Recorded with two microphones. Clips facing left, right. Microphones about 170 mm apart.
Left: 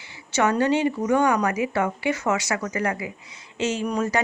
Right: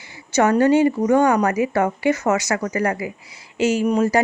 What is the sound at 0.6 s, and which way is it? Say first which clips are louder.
A woman's voice: right 6 dB; 40° right (ahead or behind).